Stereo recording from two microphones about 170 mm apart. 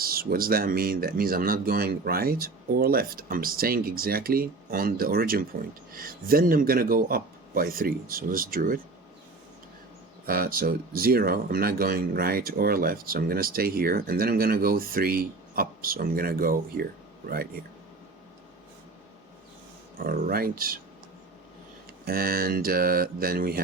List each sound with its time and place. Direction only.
0.0 s speech: 60° right (ahead or behind)
10.2 s speech: 60° right (ahead or behind)
20.0 s speech: 60° right (ahead or behind)
22.0 s speech: 60° right (ahead or behind)